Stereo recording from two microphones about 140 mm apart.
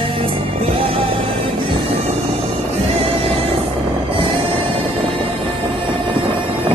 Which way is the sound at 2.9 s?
45° right (ahead or behind).